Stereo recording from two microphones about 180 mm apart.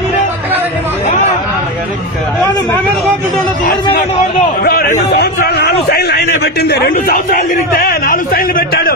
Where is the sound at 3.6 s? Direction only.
50° left (ahead or behind).